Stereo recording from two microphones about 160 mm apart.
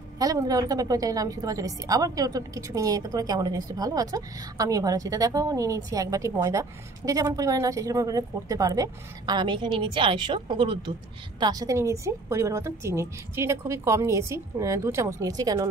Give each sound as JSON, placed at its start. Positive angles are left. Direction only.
{"t": 0.2, "sound": "a woman's voice", "side_deg": -20}